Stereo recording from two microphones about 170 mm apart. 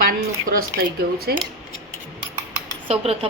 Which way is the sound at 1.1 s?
65° right (ahead or behind).